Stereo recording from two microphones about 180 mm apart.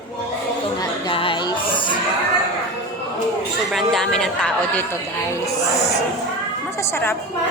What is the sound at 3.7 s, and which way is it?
A woman's voice, centre (ahead or behind).